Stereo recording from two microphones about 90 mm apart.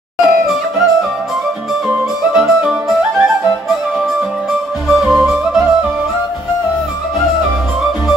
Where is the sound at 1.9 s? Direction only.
10° right (ahead or behind).